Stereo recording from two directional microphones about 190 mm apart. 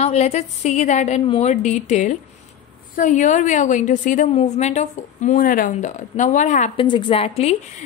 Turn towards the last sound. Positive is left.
turn(degrees=30)  # may be behind; listen again after turning